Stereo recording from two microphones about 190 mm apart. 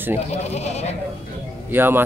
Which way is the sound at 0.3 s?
35° left (ahead or behind).